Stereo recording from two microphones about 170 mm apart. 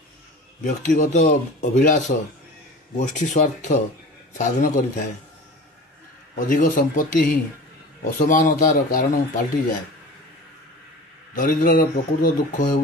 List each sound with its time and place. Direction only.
0.7 s a man's voice: 45° left (ahead or behind)
6.3 s a man's voice: 50° left (ahead or behind)
11.3 s a man's voice: 50° left (ahead or behind)